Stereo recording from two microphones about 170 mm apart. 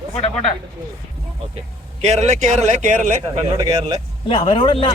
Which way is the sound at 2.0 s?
40° right (ahead or behind).